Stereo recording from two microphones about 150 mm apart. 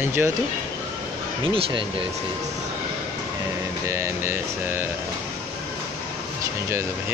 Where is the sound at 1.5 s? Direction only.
35° right (ahead or behind).